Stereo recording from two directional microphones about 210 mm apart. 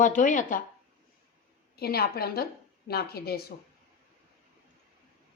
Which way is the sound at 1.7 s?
45° left (ahead or behind).